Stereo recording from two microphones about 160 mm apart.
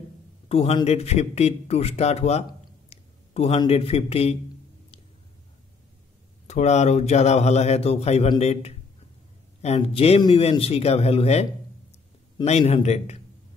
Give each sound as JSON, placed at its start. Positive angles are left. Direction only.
{"t": 0.5, "sound": "a man's voice", "side_deg": 35}
{"t": 6.4, "sound": "a man's voice", "side_deg": 45}
{"t": 12.4, "sound": "a man's voice", "side_deg": 40}